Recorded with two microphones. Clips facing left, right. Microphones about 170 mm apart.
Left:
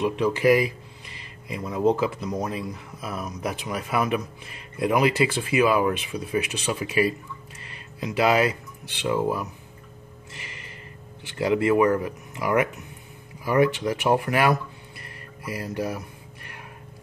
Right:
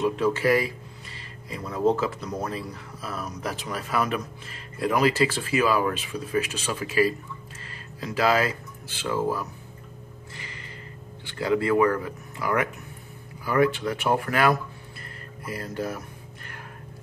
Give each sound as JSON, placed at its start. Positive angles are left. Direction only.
{"t": 0.2, "sound": "speech", "side_deg": 15}
{"t": 11.3, "sound": "speech", "side_deg": 20}
{"t": 15.5, "sound": "speech", "side_deg": 15}